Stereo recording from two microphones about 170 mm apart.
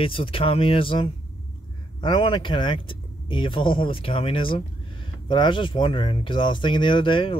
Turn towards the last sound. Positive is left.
turn(degrees=30)  # may be behind; listen again after turning